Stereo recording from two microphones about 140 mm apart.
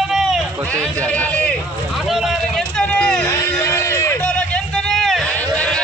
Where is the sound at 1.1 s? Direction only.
10° left (ahead or behind).